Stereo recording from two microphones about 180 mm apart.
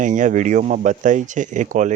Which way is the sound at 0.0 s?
45° right (ahead or behind).